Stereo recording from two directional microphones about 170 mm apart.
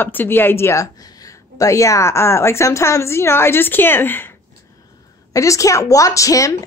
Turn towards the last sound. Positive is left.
turn(degrees=20)  # may be behind; listen again after turning